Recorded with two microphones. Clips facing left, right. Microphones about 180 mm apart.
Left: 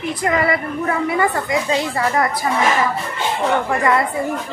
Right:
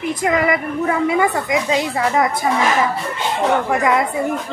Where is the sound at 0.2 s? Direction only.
10° right (ahead or behind).